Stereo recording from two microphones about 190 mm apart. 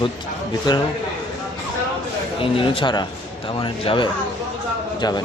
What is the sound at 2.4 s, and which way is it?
A man's voice, 30° left (ahead or behind).